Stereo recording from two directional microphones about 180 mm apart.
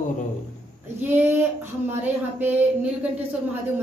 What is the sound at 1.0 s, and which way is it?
A woman's voice, 10° right (ahead or behind).